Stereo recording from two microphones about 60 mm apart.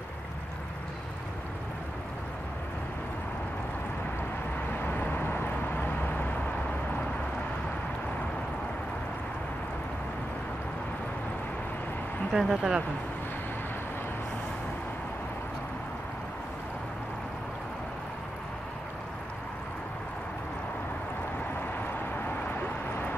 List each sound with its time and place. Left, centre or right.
4.7 s vehicle: left
12.3 s speech: centre
22.1 s vehicle: left